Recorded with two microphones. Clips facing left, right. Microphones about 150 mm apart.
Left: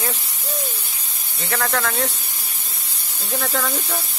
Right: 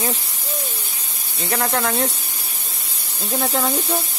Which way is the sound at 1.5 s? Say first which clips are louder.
Right 2 dB; 25° right (ahead or behind).